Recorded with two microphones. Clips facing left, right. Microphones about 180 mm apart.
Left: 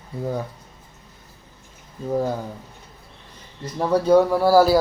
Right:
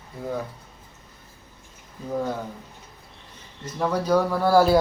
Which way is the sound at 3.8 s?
30° left (ahead or behind).